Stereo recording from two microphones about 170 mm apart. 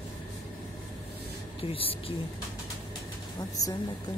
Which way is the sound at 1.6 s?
35° left (ahead or behind).